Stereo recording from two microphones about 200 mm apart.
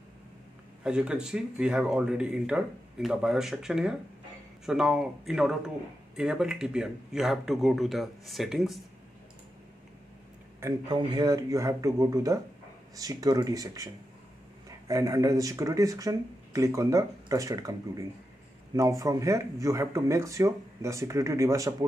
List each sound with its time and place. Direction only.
0.8 s speech: 5° right (ahead or behind)
10.6 s speech: 20° right (ahead or behind)
14.9 s speech: 15° right (ahead or behind)